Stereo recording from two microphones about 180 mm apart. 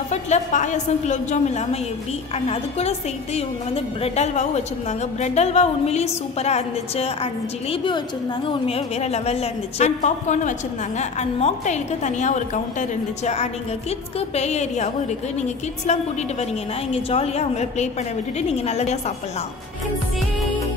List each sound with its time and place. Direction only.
0.1 s a woman's voice: 40° left (ahead or behind)